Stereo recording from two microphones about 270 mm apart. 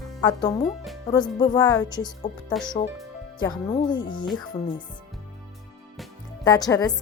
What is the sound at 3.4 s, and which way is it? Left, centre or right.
Speech, centre.